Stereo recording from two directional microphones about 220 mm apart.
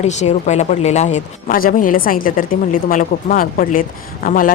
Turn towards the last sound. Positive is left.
turn(degrees=40)  # may be behind; listen again after turning